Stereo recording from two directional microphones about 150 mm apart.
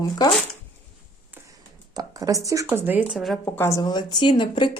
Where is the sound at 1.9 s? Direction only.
25° right (ahead or behind); by 3.4 s 5° right (ahead or behind).